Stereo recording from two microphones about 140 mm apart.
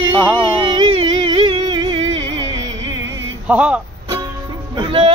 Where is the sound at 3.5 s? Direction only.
10° right (ahead or behind).